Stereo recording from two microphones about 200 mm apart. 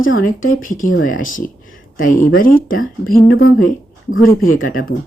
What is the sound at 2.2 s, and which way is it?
Speech, 45° left (ahead or behind).